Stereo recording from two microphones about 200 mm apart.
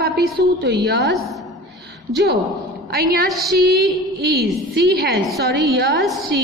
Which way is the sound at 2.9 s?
45° right (ahead or behind).